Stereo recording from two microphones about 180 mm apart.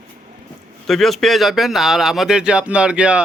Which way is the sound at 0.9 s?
Centre (ahead or behind).